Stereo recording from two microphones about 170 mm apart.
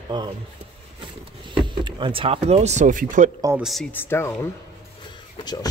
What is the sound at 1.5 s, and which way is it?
Speech, 30° right (ahead or behind).